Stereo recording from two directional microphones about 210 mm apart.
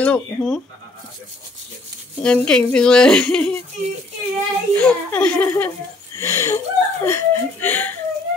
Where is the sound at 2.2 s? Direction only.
5° left (ahead or behind).